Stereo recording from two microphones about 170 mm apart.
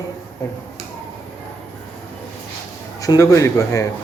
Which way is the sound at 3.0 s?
20° left (ahead or behind).